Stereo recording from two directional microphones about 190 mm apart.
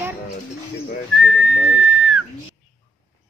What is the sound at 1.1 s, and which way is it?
Speech, 5° right (ahead or behind).